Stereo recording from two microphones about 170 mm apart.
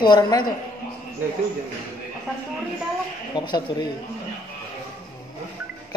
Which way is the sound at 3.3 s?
25° left (ahead or behind).